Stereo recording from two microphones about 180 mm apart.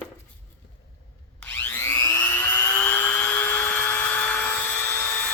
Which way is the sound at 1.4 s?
10° left (ahead or behind).